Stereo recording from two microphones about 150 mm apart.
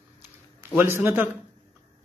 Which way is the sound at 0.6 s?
15° right (ahead or behind).